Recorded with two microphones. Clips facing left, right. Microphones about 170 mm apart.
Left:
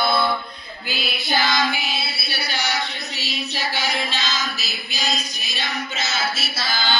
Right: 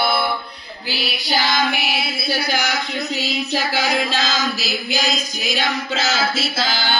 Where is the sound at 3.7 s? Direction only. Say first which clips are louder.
Right 5 dB; 90° right.